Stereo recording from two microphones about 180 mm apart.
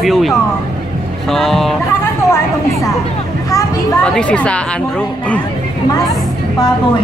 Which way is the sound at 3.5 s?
20° left (ahead or behind).